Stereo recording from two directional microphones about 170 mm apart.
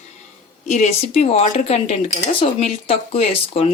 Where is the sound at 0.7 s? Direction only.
40° left (ahead or behind).